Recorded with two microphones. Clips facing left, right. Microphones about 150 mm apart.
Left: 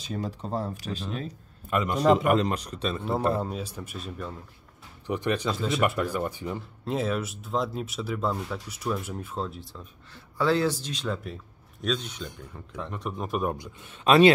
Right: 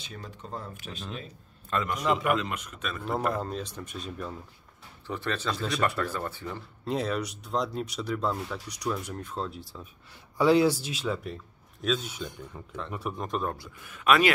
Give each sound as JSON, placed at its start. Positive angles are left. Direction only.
{"t": 0.0, "sound": "a man's voice", "side_deg": 35}
{"t": 1.7, "sound": "speech", "side_deg": 20}
{"t": 2.0, "sound": "a man's voice", "side_deg": 40}
{"t": 3.3, "sound": "speech", "side_deg": 10}
{"t": 5.0, "sound": "speech", "side_deg": 15}
{"t": 6.8, "sound": "speech", "side_deg": 0}
{"t": 10.1, "sound": "a man's voice", "side_deg": -15}
{"t": 13.3, "sound": "speech", "side_deg": 15}